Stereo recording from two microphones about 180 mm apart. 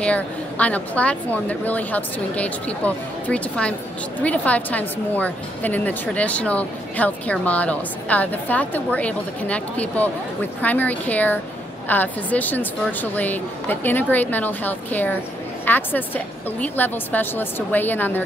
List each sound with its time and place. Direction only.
0.0 s a woman's voice: 5° left (ahead or behind)